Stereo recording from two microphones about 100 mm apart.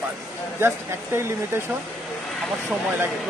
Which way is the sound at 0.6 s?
25° right (ahead or behind).